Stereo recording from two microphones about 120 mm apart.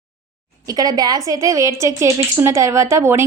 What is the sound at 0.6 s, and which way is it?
A woman's voice, 30° right (ahead or behind).